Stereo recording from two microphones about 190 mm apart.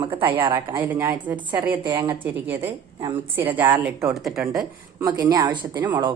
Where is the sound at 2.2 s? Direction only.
10° right (ahead or behind).